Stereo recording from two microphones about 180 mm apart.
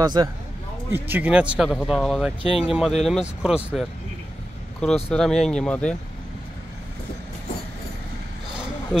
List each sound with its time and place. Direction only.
0.0 s speech: 25° right (ahead or behind)
0.9 s speech: 10° right (ahead or behind)
4.8 s speech: 5° left (ahead or behind)